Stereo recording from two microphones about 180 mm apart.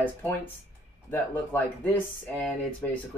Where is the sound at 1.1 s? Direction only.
10° left (ahead or behind).